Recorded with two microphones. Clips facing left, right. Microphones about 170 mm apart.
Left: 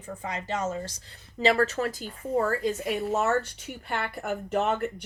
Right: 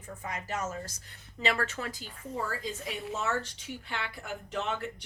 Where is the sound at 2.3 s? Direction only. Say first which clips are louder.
Left 10 dB; 60° left (ahead or behind).